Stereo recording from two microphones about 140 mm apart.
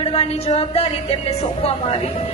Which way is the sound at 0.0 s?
45° left (ahead or behind).